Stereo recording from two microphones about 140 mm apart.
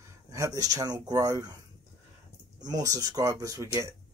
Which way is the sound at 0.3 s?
25° right (ahead or behind).